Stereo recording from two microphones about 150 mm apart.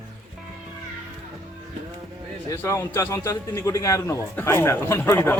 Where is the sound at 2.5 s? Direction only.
20° left (ahead or behind).